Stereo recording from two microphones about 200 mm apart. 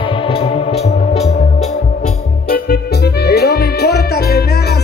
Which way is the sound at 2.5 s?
55° left (ahead or behind).